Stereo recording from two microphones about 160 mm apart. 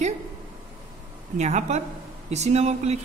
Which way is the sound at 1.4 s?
45° right (ahead or behind).